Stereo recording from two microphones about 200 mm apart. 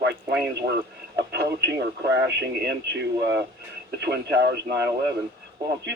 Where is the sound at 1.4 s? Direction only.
55° right (ahead or behind).